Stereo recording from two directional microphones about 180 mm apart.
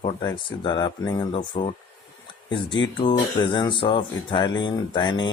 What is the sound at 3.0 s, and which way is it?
Speech, 25° left (ahead or behind).